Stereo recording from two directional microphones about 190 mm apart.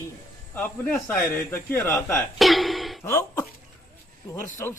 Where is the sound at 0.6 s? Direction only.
10° left (ahead or behind).